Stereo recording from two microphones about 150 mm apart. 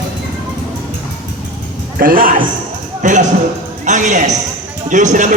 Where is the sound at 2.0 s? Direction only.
70° right (ahead or behind).